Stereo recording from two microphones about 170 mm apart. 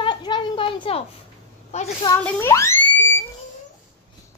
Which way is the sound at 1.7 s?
40° left (ahead or behind).